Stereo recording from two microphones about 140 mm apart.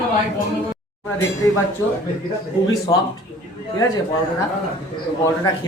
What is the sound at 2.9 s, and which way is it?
Speech, 30° left (ahead or behind).